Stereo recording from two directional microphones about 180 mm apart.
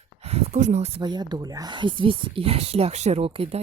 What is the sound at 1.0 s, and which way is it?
A woman's voice, 25° right (ahead or behind).